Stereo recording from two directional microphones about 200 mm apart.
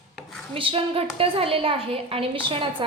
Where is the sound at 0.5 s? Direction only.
25° right (ahead or behind).